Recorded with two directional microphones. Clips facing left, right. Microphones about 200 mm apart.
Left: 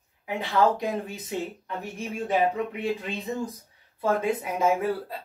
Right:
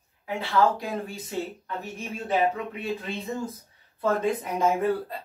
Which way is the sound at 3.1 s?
15° left (ahead or behind).